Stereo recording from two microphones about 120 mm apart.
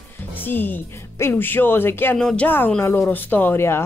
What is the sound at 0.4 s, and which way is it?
Speech, 15° left (ahead or behind).